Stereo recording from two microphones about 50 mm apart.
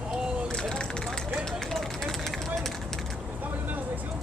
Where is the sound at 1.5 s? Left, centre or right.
Centre.